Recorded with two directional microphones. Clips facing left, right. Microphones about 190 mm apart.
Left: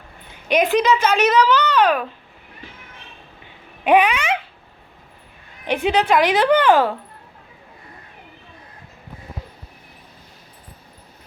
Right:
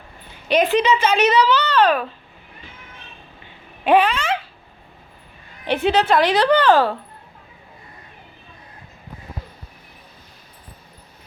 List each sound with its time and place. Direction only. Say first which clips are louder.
0.4 s speech: even; 10° left (ahead or behind)
3.8 s speech: even; 15° left (ahead or behind)
5.6 s speech: right 1 dB; 10° left (ahead or behind)